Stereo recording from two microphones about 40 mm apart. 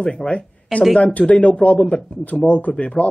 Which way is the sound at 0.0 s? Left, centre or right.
Left.